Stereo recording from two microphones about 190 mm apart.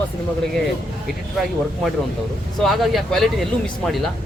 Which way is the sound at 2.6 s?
Centre (ahead or behind).